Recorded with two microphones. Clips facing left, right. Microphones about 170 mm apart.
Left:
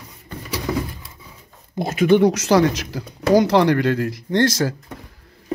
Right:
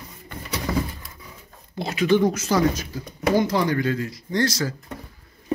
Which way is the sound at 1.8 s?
50° left (ahead or behind).